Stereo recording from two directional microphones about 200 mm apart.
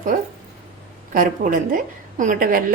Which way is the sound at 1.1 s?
45° right (ahead or behind).